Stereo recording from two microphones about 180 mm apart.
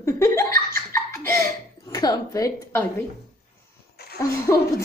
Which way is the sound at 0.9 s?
15° left (ahead or behind).